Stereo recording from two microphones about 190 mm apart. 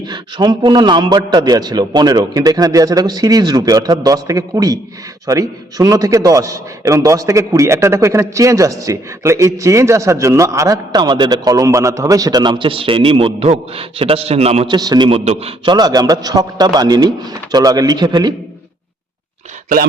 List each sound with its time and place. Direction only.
0.1 s a man's voice: 25° right (ahead or behind)
14.8 s a man's voice: 20° right (ahead or behind)
15.2 s a man's voice: 35° right (ahead or behind)